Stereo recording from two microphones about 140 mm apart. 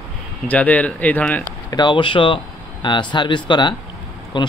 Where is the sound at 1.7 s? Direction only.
30° left (ahead or behind).